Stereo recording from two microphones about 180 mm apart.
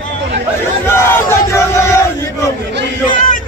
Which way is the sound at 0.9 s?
15° left (ahead or behind).